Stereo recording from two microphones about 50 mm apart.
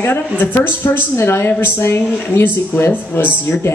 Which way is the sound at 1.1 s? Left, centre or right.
Left.